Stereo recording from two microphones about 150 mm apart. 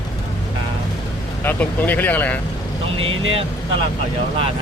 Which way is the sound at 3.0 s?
35° right (ahead or behind).